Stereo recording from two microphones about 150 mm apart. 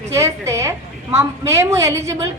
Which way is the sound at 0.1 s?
20° right (ahead or behind).